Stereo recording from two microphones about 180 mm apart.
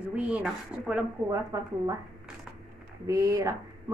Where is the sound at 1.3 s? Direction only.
15° right (ahead or behind).